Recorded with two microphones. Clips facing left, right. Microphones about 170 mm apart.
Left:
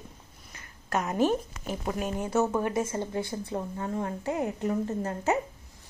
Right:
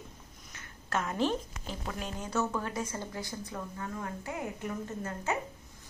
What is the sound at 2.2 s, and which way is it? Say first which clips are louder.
A woman's voice: left 6 dB; 25° left (ahead or behind).